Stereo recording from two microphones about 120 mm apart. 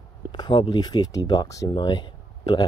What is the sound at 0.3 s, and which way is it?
Speech, 40° left (ahead or behind).